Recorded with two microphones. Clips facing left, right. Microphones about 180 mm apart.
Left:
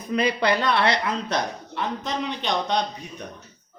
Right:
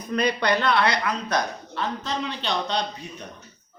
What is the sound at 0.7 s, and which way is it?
A woman's voice, 25° left (ahead or behind).